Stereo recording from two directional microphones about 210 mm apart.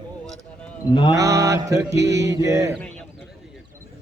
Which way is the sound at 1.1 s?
15° right (ahead or behind).